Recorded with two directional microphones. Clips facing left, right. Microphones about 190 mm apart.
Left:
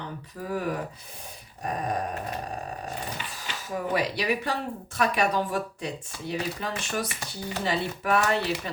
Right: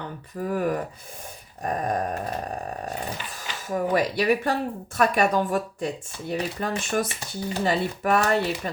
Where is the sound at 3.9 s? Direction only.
45° right (ahead or behind).